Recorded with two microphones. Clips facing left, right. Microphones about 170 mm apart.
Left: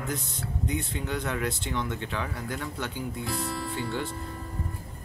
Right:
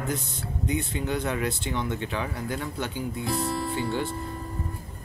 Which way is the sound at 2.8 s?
25° right (ahead or behind).